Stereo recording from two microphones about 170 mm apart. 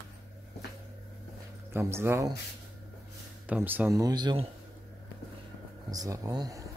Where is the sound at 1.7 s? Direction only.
15° right (ahead or behind).